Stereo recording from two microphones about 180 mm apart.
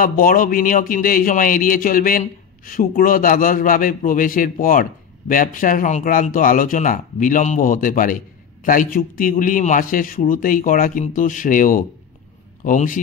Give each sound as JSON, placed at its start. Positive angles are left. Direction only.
{"t": 0.0, "sound": "speech", "side_deg": 50}